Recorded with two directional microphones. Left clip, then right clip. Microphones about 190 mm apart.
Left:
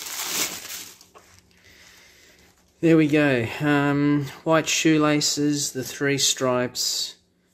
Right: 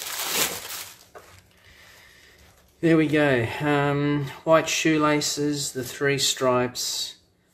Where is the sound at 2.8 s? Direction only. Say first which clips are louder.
Left 2 dB; 35° left (ahead or behind).